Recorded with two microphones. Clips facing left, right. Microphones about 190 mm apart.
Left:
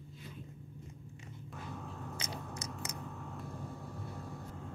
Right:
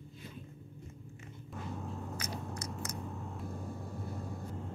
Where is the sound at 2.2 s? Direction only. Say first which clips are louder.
Right 2 dB; 20° left (ahead or behind).